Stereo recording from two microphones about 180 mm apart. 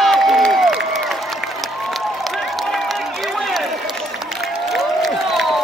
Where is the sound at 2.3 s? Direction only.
Centre (ahead or behind).